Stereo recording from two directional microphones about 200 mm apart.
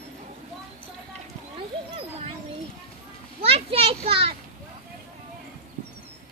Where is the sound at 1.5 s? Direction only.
30° right (ahead or behind).